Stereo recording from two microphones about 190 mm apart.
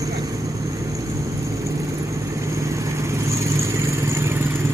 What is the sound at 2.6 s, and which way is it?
Vehicle, 15° right (ahead or behind).